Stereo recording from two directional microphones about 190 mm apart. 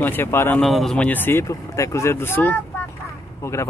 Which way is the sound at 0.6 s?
Centre (ahead or behind).